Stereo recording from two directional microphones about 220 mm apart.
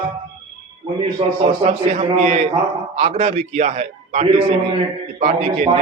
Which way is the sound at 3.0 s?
30° right (ahead or behind).